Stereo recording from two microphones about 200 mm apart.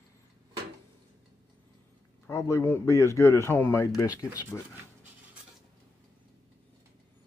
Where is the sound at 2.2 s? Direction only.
15° left (ahead or behind).